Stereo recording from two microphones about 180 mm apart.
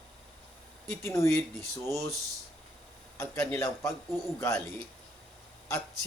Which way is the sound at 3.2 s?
15° left (ahead or behind).